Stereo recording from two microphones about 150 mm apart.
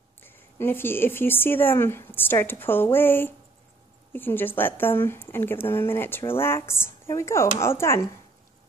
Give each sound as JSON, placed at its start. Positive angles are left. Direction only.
{"t": 0.2, "sound": "speech", "side_deg": 15}